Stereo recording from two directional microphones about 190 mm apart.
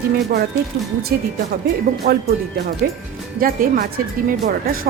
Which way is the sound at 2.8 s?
50° right (ahead or behind).